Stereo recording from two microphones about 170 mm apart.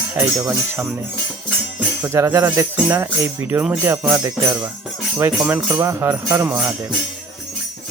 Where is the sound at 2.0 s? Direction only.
15° right (ahead or behind).